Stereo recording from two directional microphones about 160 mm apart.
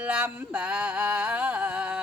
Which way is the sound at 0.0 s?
10° right (ahead or behind).